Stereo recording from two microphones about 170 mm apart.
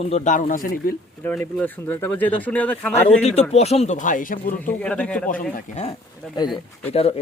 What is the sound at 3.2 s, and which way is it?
Speech, 40° left (ahead or behind).